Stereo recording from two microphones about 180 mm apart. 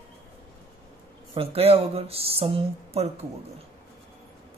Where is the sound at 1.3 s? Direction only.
30° right (ahead or behind).